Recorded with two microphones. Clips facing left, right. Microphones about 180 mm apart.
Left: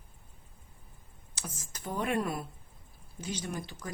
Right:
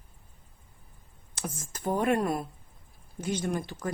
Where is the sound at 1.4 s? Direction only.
55° right (ahead or behind).